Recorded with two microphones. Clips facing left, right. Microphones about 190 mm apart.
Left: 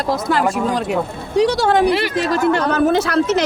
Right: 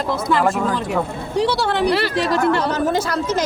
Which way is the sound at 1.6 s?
45° left (ahead or behind).